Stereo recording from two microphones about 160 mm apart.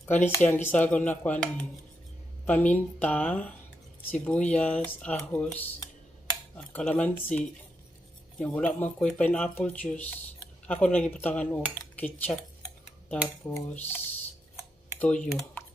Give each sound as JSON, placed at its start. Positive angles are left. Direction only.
{"t": 0.0, "sound": "speech", "side_deg": 15}
{"t": 13.5, "sound": "speech", "side_deg": 15}
{"t": 15.0, "sound": "speech", "side_deg": 10}